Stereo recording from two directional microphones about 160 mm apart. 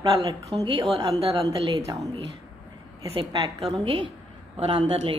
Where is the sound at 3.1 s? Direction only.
35° right (ahead or behind).